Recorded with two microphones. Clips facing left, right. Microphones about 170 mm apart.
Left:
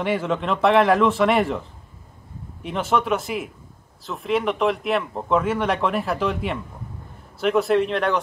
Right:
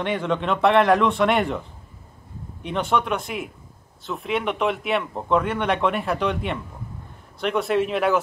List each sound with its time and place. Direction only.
0.0 s speech: 5° left (ahead or behind)
2.6 s speech: centre (ahead or behind)